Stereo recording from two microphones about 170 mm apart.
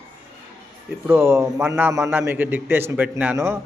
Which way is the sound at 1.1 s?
15° right (ahead or behind).